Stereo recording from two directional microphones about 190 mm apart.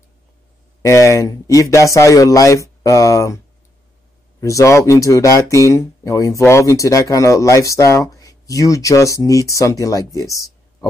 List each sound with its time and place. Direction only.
0.8 s speech: 15° left (ahead or behind)
4.4 s speech: 15° left (ahead or behind)